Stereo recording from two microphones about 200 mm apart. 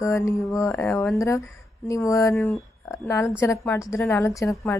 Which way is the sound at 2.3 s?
Centre (ahead or behind).